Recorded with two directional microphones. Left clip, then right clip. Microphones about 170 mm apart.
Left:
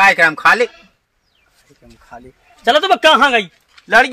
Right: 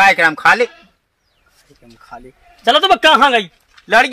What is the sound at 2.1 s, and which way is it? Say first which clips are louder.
Speech: right 2 dB; 10° right (ahead or behind).